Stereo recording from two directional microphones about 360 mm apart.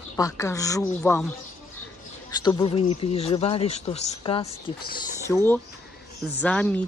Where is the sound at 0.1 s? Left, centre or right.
Centre.